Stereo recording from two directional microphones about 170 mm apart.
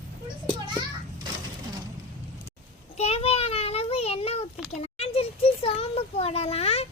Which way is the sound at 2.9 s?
35° left (ahead or behind).